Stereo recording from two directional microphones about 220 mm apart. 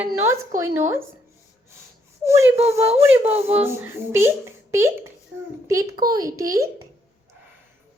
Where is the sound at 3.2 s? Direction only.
30° right (ahead or behind).